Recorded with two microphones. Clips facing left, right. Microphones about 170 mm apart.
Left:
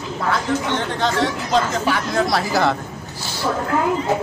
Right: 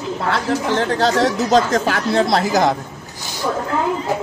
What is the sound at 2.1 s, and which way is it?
Speech, 25° right (ahead or behind).